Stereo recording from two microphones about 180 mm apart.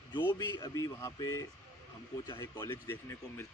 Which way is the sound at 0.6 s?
15° left (ahead or behind).